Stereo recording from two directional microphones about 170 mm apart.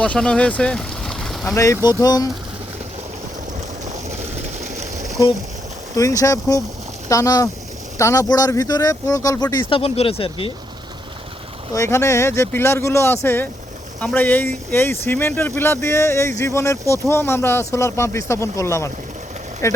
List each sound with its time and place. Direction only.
0.0 s speech: 5° left (ahead or behind)
1.5 s speech: 20° left (ahead or behind)
6.0 s speech: 20° left (ahead or behind)
11.7 s speech: 15° left (ahead or behind)